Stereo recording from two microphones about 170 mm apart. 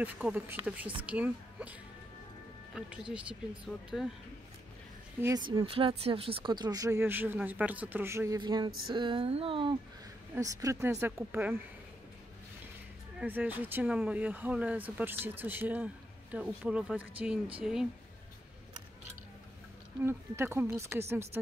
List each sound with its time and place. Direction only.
0.0 s a woman's voice: 10° right (ahead or behind)
3.1 s speech: 5° right (ahead or behind)
5.2 s speech: 25° right (ahead or behind)
8.4 s speech: 25° right (ahead or behind)
10.3 s speech: 20° right (ahead or behind)
13.2 s speech: 10° right (ahead or behind)
20.0 s speech: 15° right (ahead or behind)